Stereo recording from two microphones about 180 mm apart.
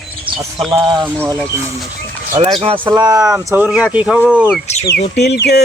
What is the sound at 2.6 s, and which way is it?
Speech, 30° right (ahead or behind).